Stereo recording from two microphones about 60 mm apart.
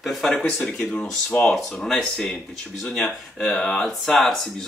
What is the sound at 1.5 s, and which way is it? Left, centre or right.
Speech, centre.